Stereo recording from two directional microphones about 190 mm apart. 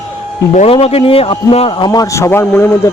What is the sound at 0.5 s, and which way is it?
A man's voice, 30° left (ahead or behind).